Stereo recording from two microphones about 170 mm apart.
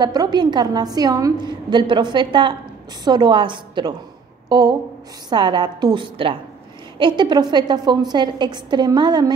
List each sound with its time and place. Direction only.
0.0 s a woman's voice: 25° right (ahead or behind)